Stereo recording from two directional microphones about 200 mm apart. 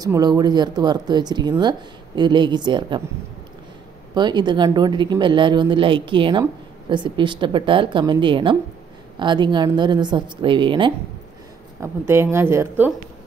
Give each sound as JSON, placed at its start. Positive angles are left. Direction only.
{"t": 0.0, "sound": "speech", "side_deg": -20}
{"t": 4.1, "sound": "speech", "side_deg": -20}
{"t": 11.8, "sound": "speech", "side_deg": -10}